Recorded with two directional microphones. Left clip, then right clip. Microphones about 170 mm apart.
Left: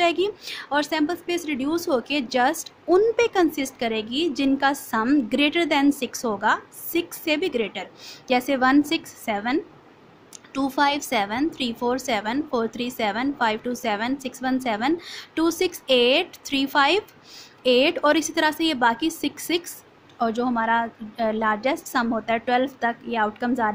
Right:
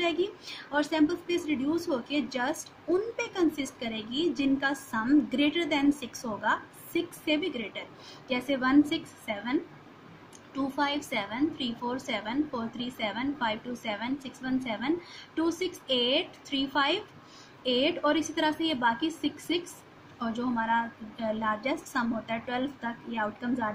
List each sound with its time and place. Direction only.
0.0 s a woman's voice: 55° left (ahead or behind)